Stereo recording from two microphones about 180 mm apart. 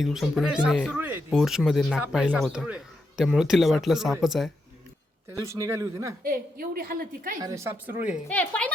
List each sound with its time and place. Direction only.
0.0 s speech: centre (ahead or behind)
5.3 s a man's voice: 15° right (ahead or behind)
6.2 s a woman's voice: 55° right (ahead or behind)
7.4 s a man's voice: 15° right (ahead or behind)
8.3 s a woman's voice: 10° left (ahead or behind)